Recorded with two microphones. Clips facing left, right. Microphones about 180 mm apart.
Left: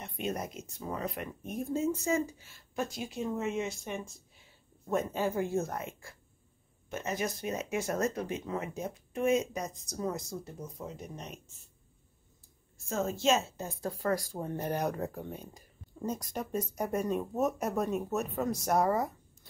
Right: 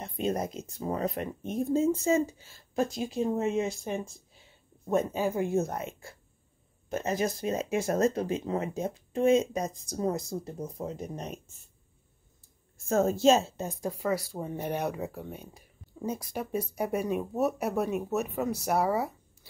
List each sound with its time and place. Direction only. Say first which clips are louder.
0.0 s speech: right 5 dB; 30° right (ahead or behind)
4.8 s speech: right 3 dB; 15° right (ahead or behind)
6.9 s speech: right 5 dB; 35° right (ahead or behind)
12.8 s speech: right 7 dB; 45° right (ahead or behind)
13.7 s speech: right 2 dB; 15° right (ahead or behind)